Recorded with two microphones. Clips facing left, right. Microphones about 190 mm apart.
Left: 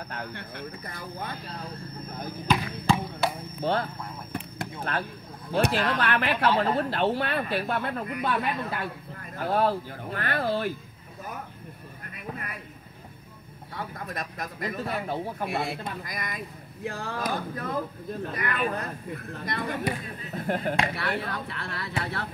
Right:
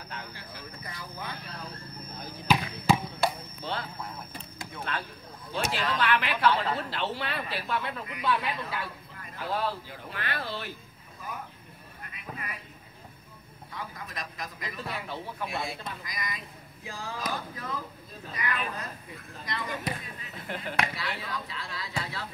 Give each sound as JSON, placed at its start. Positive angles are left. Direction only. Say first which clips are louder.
{"t": 0.1, "sound": "vehicle", "louder": "left 5 dB", "side_deg": 55}
{"t": 2.4, "sound": "basketball bounce", "louder": "even", "side_deg": -5}
{"t": 3.6, "sound": "speech", "louder": "left 9 dB", "side_deg": 50}
{"t": 5.5, "sound": "speech", "louder": "left 6 dB", "side_deg": 55}
{"t": 12.1, "sound": "a sound", "louder": "left 4 dB", "side_deg": 50}
{"t": 13.7, "sound": "speech", "louder": "left 5 dB", "side_deg": 55}
{"t": 20.9, "sound": "speech", "louder": "left 5 dB", "side_deg": 55}